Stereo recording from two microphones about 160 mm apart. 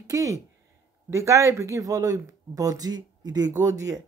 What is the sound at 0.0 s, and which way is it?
A woman's voice, 20° right (ahead or behind).